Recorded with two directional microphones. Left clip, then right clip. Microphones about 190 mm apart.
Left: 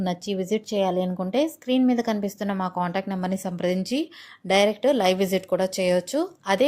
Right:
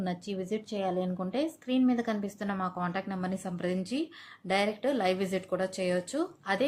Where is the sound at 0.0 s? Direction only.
35° left (ahead or behind).